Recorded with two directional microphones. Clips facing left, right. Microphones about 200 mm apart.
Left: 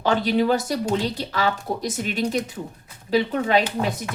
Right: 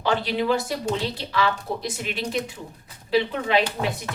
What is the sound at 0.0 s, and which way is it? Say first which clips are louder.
A woman's voice: left 4 dB; 45° left (ahead or behind).